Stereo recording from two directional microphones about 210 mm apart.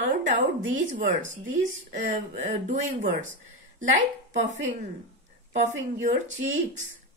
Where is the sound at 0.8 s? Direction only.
35° right (ahead or behind).